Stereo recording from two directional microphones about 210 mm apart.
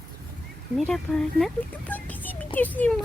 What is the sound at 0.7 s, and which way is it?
Speech, centre (ahead or behind).